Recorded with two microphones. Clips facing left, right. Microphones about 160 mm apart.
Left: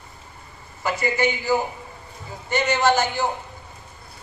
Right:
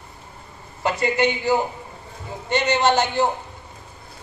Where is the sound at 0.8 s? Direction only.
25° right (ahead or behind).